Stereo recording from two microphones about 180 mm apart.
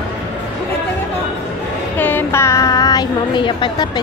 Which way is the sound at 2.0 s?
10° left (ahead or behind).